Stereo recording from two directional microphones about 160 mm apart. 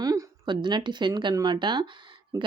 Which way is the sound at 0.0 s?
25° right (ahead or behind).